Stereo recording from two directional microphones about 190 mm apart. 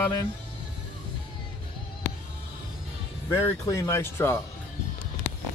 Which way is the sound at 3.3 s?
15° left (ahead or behind).